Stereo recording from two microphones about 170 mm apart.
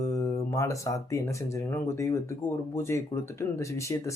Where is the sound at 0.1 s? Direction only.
15° left (ahead or behind).